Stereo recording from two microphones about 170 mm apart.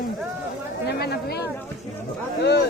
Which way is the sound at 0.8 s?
70° left (ahead or behind).